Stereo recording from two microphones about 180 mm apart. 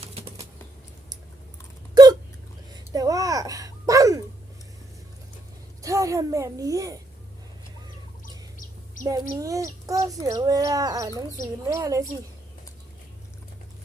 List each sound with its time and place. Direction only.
0.0 s a sound: 35° right (ahead or behind)
2.0 s hiccup: 25° right (ahead or behind)
2.9 s a sound: 20° right (ahead or behind)
5.8 s a woman's voice: 15° right (ahead or behind)
8.2 s bird: 50° left (ahead or behind)
9.0 s speech: 20° right (ahead or behind)